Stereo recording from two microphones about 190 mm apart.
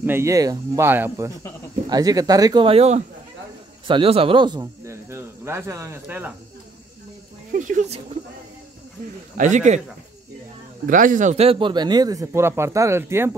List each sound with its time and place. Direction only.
0.0 s speech: 15° right (ahead or behind)
7.5 s speech: 40° right (ahead or behind)
9.4 s speech: 40° right (ahead or behind)
10.9 s speech: 45° right (ahead or behind); by 13.4 s 15° right (ahead or behind)